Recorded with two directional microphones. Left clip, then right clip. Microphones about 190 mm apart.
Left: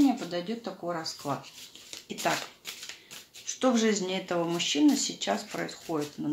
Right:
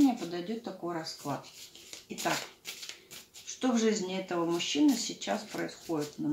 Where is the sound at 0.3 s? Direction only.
30° left (ahead or behind).